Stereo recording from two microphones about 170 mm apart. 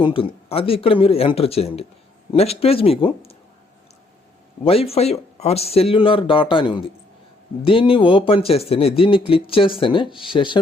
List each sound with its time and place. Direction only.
0.0 s speech: 30° left (ahead or behind)
4.6 s speech: 35° left (ahead or behind)